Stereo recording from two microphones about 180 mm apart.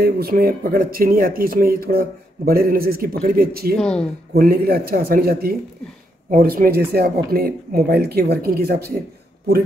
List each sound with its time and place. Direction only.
0.0 s speech: 55° right (ahead or behind)
3.7 s speech: 5° left (ahead or behind)
4.3 s speech: 60° right (ahead or behind)